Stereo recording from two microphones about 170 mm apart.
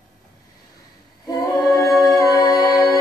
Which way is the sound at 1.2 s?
20° left (ahead or behind).